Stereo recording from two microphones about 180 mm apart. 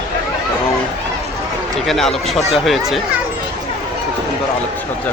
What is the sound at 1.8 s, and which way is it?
Speech, centre (ahead or behind).